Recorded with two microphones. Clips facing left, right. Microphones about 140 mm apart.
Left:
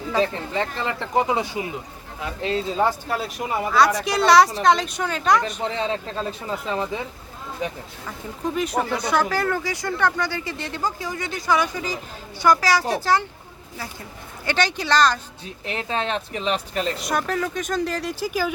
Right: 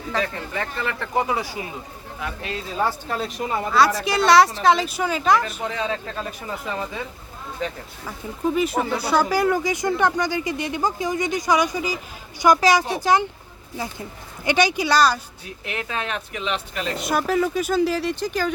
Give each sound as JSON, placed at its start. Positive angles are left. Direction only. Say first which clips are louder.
{"t": 0.2, "sound": "speech", "louder": "left 5 dB", "side_deg": 20}
{"t": 3.1, "sound": "a woman's voice", "louder": "even", "side_deg": 5}
{"t": 5.6, "sound": "speech", "louder": "left 1 dB", "side_deg": 30}
{"t": 7.6, "sound": "speech", "louder": "even", "side_deg": 15}
{"t": 8.0, "sound": "speech", "louder": "right 4 dB", "side_deg": -5}
{"t": 14.4, "sound": "speech", "louder": "right 4 dB", "side_deg": -10}
{"t": 15.6, "sound": "a woman's voice", "louder": "left 3 dB", "side_deg": 30}
{"t": 17.0, "sound": "a woman's voice", "louder": "right 3 dB", "side_deg": -5}